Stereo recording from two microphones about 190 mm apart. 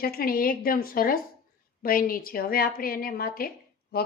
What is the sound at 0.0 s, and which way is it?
A woman's voice, 50° left (ahead or behind).